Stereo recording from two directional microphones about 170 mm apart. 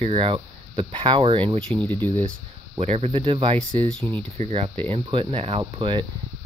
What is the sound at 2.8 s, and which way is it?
Speech, 35° right (ahead or behind).